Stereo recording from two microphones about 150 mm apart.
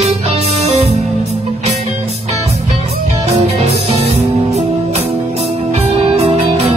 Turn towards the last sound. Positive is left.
turn(degrees=-45)  # may be behind; listen again after turning